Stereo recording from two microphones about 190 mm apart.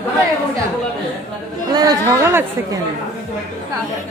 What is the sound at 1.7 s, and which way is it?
Speech, 20° right (ahead or behind).